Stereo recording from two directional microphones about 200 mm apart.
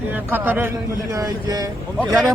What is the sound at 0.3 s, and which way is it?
Speech, 10° right (ahead or behind).